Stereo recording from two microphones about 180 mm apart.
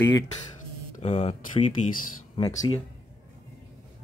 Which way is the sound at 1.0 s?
35° left (ahead or behind).